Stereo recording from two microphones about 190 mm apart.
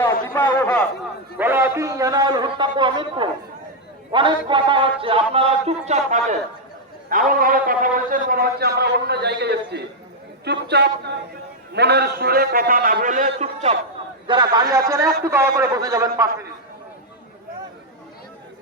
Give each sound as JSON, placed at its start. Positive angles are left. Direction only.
{"t": 0.0, "sound": "a man's voice", "side_deg": 10}
{"t": 1.4, "sound": "a man's voice", "side_deg": -10}
{"t": 14.3, "sound": "a man's voice", "side_deg": -25}